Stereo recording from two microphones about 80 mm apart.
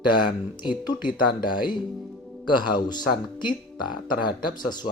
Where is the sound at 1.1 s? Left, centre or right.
Left.